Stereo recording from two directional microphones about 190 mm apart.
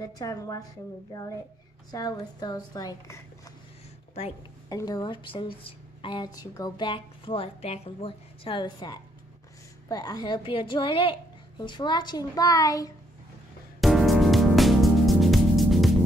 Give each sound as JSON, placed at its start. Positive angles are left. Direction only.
{"t": 0.2, "sound": "a woman's voice", "side_deg": 20}
{"t": 1.9, "sound": "a woman's voice", "side_deg": 20}
{"t": 4.6, "sound": "a woman's voice", "side_deg": 20}
{"t": 13.7, "sound": "music", "side_deg": 0}